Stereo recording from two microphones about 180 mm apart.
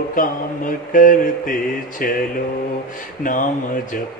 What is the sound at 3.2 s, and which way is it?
Mantra, 45° left (ahead or behind).